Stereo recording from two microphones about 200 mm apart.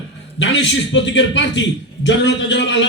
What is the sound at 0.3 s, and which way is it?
A man's voice, 70° left (ahead or behind).